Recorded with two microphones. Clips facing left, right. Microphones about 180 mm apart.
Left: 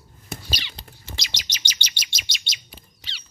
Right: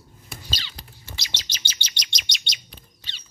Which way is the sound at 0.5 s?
15° left (ahead or behind).